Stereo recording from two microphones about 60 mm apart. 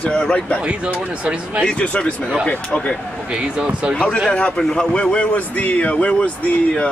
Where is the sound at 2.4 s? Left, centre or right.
Centre.